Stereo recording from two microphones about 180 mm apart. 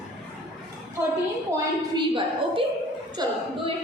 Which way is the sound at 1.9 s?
30° right (ahead or behind).